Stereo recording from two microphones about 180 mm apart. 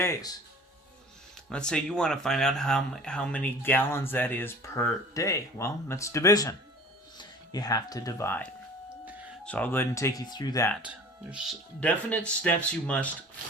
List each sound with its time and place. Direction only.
0.0 s speech: 20° left (ahead or behind)
1.5 s speech: 5° left (ahead or behind); by 10.7 s 20° left (ahead or behind)
10.8 s speech: 5° right (ahead or behind)
11.8 s speech: 10° left (ahead or behind)